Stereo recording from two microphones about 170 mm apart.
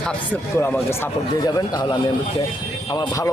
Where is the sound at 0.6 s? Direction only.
15° left (ahead or behind).